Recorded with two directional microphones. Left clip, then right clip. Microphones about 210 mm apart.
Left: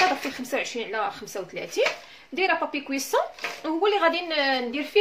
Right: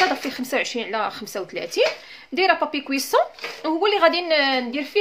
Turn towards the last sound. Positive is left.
turn(degrees=-40)  # may be behind; listen again after turning